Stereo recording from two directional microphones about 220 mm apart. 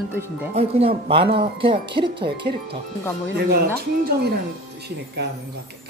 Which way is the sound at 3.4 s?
45° right (ahead or behind).